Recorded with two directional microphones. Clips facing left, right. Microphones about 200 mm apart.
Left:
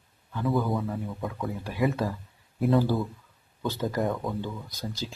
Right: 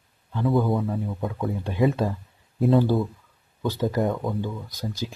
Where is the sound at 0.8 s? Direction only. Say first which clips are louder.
Right 4 dB; 25° right (ahead or behind).